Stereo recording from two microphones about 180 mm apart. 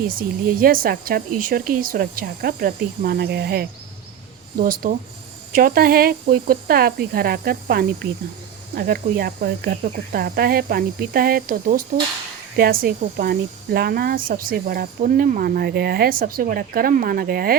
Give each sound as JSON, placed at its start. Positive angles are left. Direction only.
{"t": 0.1, "sound": "speech", "side_deg": -55}